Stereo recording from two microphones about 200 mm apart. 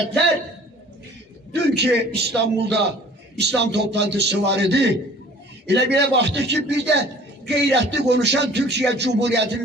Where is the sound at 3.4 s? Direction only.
60° right (ahead or behind).